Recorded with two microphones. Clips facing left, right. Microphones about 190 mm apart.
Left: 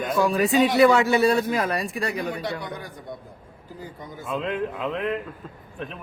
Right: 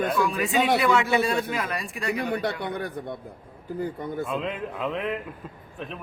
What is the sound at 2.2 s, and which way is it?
Speech, 60° right (ahead or behind).